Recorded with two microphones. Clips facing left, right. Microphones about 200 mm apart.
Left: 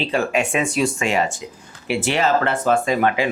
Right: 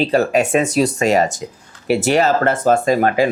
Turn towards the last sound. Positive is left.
turn(degrees=-40)  # may be behind; listen again after turning